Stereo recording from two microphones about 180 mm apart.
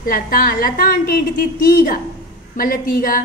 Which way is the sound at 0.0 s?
50° left (ahead or behind).